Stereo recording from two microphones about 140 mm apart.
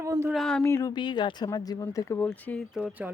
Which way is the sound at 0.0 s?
20° right (ahead or behind).